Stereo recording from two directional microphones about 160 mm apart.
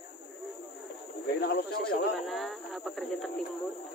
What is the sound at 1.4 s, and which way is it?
Speech, 80° left.